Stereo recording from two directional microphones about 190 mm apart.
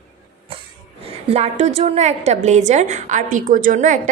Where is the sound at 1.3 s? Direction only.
35° right (ahead or behind).